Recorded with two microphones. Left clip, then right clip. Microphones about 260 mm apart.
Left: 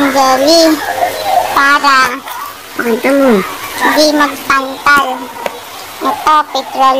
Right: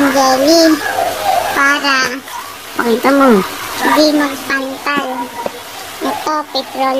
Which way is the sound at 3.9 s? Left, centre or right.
Centre.